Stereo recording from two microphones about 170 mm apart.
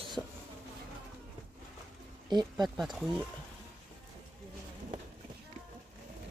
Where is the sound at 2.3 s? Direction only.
25° right (ahead or behind).